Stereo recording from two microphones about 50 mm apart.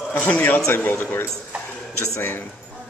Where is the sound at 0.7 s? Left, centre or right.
Left.